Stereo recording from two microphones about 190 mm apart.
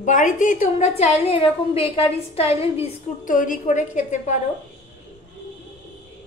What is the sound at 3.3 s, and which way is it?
A woman's voice, 45° left (ahead or behind).